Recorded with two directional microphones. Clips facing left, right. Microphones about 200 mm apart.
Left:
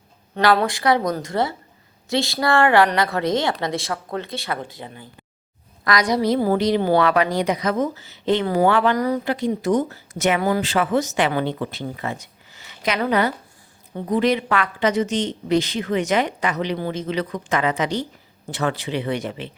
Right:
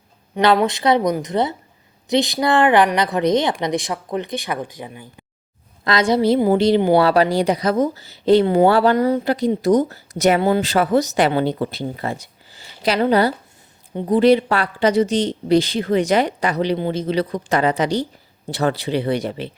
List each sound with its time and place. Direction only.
0.3 s speech: 20° right (ahead or behind)